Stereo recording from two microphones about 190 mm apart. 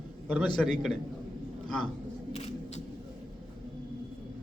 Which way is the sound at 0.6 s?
5° left (ahead or behind).